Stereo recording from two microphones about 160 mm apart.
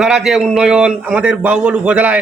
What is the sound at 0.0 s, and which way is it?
A man's voice, centre (ahead or behind).